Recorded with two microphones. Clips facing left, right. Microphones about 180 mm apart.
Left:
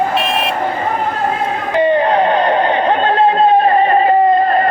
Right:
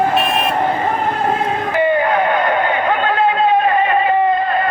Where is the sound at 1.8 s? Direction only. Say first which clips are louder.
Left 3 dB; 30° left (ahead or behind).